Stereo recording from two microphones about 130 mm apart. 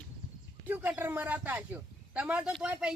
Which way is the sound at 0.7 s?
15° right (ahead or behind).